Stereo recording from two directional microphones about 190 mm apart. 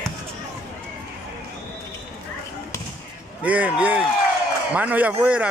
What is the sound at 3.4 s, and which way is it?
A man's voice, 10° right (ahead or behind).